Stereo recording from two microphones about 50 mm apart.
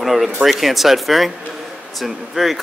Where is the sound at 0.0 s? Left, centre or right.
Centre.